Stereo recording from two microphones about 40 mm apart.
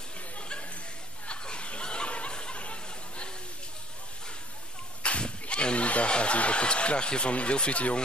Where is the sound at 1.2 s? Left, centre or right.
Left.